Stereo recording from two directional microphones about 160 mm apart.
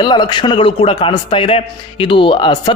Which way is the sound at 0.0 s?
30° left (ahead or behind).